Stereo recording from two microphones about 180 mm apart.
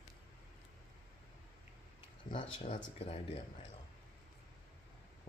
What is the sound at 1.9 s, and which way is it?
Speech, 30° left (ahead or behind).